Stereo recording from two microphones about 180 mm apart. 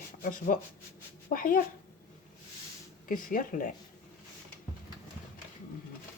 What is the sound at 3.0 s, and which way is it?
Speech, 50° left (ahead or behind).